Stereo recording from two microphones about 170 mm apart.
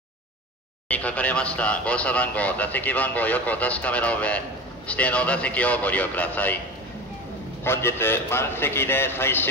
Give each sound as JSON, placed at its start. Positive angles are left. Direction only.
{"t": 0.8, "sound": "speech", "side_deg": 10}
{"t": 7.6, "sound": "speech", "side_deg": 15}